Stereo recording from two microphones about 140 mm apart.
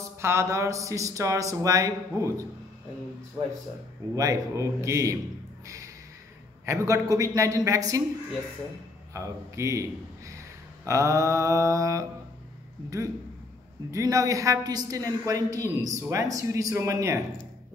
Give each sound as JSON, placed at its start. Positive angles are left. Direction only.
{"t": 0.2, "sound": "a man's voice", "side_deg": -20}
{"t": 4.1, "sound": "a man's voice", "side_deg": -25}
{"t": 6.6, "sound": "a man's voice", "side_deg": -20}
{"t": 9.1, "sound": "a man's voice", "side_deg": -20}
{"t": 13.9, "sound": "a man's voice", "side_deg": -25}